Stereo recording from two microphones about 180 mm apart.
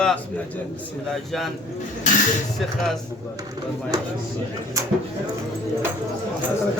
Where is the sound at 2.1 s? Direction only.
45° left (ahead or behind).